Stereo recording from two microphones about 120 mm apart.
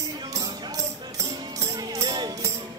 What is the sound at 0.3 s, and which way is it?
Music, 30° right (ahead or behind).